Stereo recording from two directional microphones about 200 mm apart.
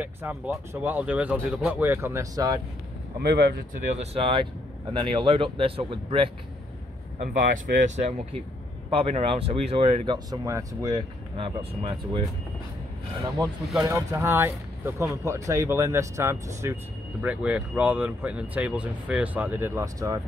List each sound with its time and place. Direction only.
0.0 s speech: 10° right (ahead or behind)
3.2 s speech: 55° right (ahead or behind)
4.0 s speech: 30° right (ahead or behind)
7.2 s speech: 40° right (ahead or behind); by 12.2 s 25° right (ahead or behind)
13.8 s speech: 15° right (ahead or behind)